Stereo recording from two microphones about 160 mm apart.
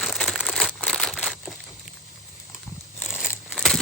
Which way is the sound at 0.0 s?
Centre (ahead or behind).